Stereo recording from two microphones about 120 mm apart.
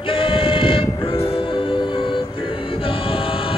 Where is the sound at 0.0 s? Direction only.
50° left (ahead or behind).